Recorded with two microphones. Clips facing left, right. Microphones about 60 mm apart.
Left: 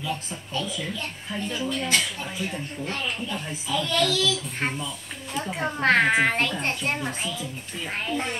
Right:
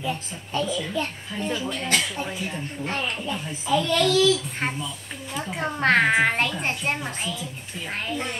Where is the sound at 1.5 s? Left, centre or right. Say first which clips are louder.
Even; right.